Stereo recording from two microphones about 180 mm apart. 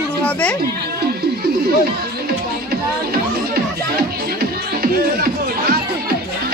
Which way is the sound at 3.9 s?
55° right (ahead or behind).